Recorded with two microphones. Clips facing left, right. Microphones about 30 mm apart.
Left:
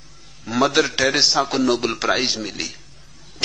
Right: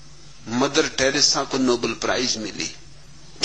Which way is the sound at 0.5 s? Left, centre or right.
Centre.